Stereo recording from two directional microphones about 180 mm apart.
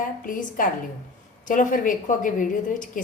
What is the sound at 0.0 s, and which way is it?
A woman's voice, 50° left (ahead or behind).